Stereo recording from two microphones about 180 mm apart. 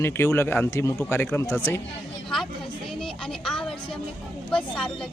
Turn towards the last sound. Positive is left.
turn(degrees=5)  # may be behind; listen again after turning